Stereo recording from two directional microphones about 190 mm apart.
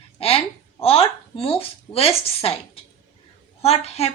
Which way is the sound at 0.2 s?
30° left (ahead or behind).